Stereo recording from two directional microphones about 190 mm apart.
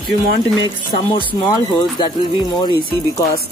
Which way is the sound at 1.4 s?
20° left (ahead or behind).